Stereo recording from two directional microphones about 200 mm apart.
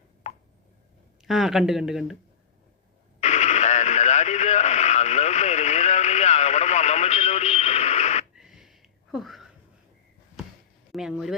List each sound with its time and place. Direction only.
1.2 s speech: centre (ahead or behind)
3.2 s radio: 35° left (ahead or behind)
8.4 s a sound: centre (ahead or behind)
10.9 s speech: centre (ahead or behind)